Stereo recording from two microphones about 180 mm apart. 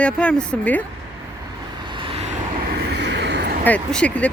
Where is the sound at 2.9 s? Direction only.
70° right (ahead or behind).